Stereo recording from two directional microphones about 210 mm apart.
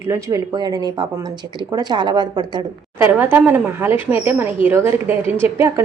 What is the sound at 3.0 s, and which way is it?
A woman's voice, 10° right (ahead or behind).